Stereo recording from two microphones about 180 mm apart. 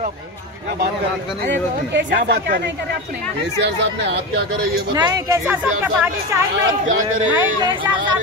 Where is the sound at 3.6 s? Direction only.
70° right (ahead or behind).